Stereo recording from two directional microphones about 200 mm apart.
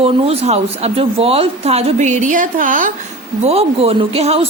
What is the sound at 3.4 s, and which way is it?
Speech, 30° right (ahead or behind).